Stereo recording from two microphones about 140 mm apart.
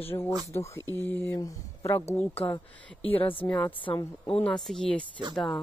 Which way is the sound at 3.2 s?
40° left (ahead or behind).